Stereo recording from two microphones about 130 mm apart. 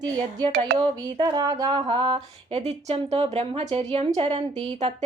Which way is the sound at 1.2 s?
30° right (ahead or behind).